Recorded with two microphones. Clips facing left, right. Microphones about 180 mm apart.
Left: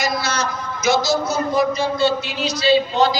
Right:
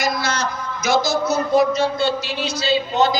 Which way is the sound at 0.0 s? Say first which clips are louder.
Even; 55° right (ahead or behind).